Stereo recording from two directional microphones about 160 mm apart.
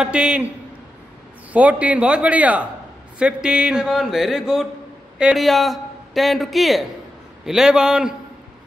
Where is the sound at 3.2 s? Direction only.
5° right (ahead or behind).